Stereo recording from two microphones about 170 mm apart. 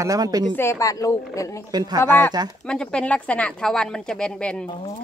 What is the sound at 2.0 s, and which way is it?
Speech, 15° left (ahead or behind).